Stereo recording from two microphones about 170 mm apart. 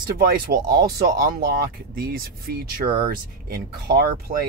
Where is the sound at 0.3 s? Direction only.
65° right (ahead or behind).